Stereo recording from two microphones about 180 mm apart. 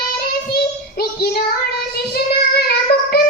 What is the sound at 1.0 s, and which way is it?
Child singing, 60° left (ahead or behind).